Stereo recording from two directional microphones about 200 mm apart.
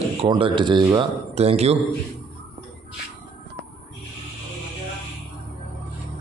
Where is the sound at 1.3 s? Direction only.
30° right (ahead or behind).